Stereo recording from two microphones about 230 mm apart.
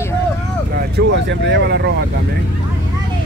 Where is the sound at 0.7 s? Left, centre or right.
Right.